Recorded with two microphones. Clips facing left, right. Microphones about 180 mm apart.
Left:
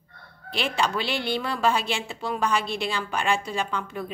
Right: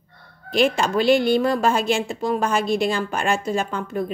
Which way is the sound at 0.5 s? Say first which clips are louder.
Right 7 dB; 45° right (ahead or behind).